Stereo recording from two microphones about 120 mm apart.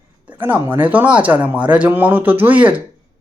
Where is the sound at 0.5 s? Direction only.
35° right (ahead or behind).